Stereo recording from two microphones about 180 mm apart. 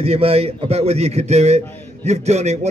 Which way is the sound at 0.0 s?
35° right (ahead or behind).